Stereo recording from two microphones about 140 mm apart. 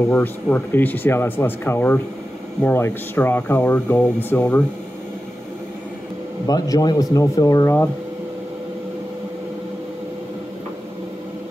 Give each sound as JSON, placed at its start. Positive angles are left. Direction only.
{"t": 0.1, "sound": "speech", "side_deg": 10}
{"t": 6.4, "sound": "speech", "side_deg": 25}